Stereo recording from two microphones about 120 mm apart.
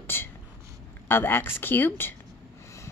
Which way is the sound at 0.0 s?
20° left (ahead or behind).